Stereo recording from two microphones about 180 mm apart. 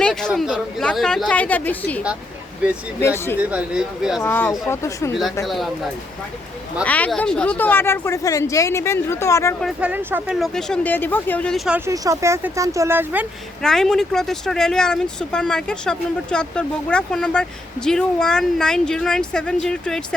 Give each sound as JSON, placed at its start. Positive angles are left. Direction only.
{"t": 0.0, "sound": "speech", "side_deg": 5}
{"t": 3.0, "sound": "speech", "side_deg": 15}
{"t": 3.5, "sound": "speech", "side_deg": -5}
{"t": 4.2, "sound": "speech", "side_deg": 10}
{"t": 6.8, "sound": "speech", "side_deg": 10}
{"t": 9.6, "sound": "speech", "side_deg": -5}
{"t": 11.9, "sound": "speech", "side_deg": -15}
{"t": 13.6, "sound": "speech", "side_deg": 0}